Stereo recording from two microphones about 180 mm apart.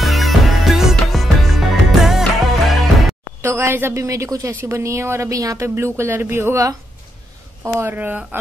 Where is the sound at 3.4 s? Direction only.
15° right (ahead or behind).